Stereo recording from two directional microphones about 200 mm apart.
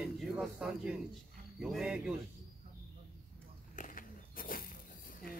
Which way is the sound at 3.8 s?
40° left (ahead or behind).